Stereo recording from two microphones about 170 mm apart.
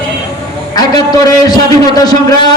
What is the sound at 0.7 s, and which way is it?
A man's voice, 25° left (ahead or behind).